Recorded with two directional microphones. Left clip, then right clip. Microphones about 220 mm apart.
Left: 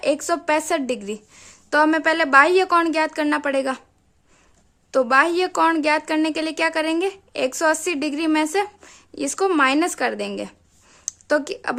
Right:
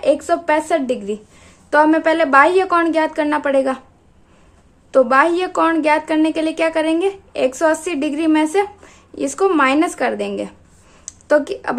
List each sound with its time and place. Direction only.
0.0 s a woman's voice: 35° left (ahead or behind)
4.9 s a woman's voice: 35° left (ahead or behind)